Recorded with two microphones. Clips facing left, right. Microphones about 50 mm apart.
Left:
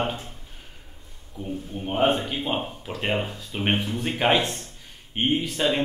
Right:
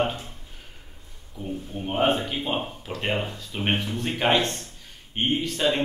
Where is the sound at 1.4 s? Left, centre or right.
Centre.